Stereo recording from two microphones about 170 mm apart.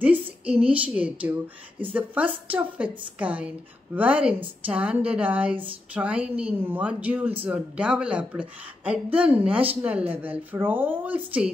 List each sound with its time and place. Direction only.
0.0 s a woman's voice: 10° right (ahead or behind)